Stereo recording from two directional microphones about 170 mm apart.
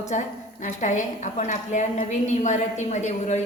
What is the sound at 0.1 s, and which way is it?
A woman's voice, 45° left (ahead or behind).